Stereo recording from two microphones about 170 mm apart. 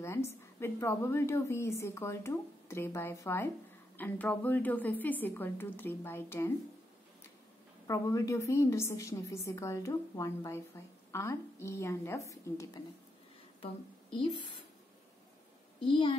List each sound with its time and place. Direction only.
0.0 s a woman's voice: 15° left (ahead or behind)
7.8 s a woman's voice: 20° left (ahead or behind)
14.1 s speech: 30° left (ahead or behind)
15.8 s a woman's voice: 30° left (ahead or behind)